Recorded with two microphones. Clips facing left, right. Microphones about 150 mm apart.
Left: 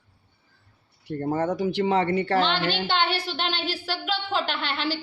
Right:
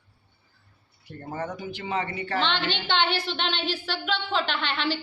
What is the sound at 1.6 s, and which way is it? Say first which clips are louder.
Speech: left 8 dB; 75° left (ahead or behind).